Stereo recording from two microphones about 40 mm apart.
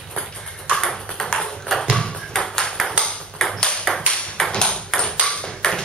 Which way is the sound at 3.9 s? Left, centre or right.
Centre.